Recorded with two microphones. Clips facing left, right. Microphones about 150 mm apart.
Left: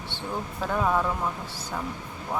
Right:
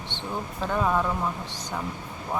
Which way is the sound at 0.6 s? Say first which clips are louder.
Even; 5° left (ahead or behind).